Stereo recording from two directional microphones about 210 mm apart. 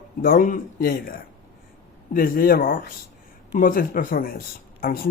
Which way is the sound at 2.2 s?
40° left (ahead or behind).